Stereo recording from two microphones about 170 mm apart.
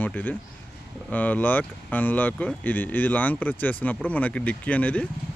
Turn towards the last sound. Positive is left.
turn(degrees=10)  # may be behind; listen again after turning